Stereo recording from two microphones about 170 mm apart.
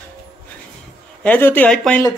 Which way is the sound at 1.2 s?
10° left (ahead or behind).